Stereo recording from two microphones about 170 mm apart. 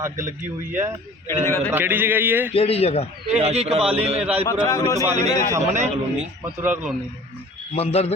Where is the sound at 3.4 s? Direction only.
40° right (ahead or behind).